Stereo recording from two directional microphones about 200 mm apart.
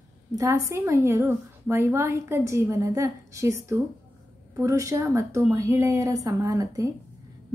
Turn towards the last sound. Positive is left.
turn(degrees=-15)  # may be behind; listen again after turning